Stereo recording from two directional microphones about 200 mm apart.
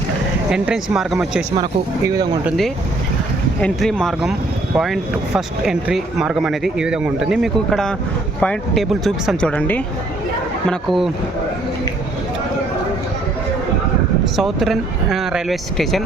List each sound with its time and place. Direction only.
0.5 s speech: 5° right (ahead or behind)
2.0 s speech: 20° right (ahead or behind)
2.4 s speech: centre (ahead or behind)
14.3 s speech: centre (ahead or behind)